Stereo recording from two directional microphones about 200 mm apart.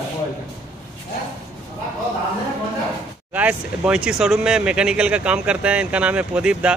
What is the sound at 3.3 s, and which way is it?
Speech, 5° right (ahead or behind).